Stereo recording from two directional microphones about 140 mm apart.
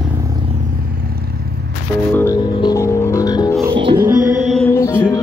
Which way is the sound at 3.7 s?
35° right (ahead or behind).